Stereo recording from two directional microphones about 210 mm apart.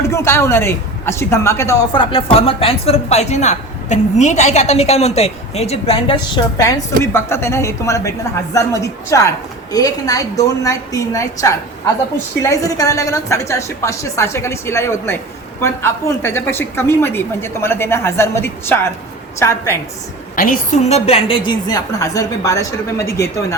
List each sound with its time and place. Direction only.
0.1 s a woman's voice: 15° left (ahead or behind)
20.3 s a woman's voice: 40° left (ahead or behind); by 23.6 s 15° left (ahead or behind)